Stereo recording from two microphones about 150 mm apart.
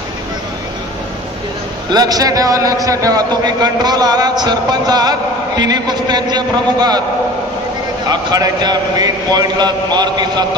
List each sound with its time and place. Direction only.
1.9 s a man's voice: 25° right (ahead or behind)
8.1 s a man's voice: 25° right (ahead or behind)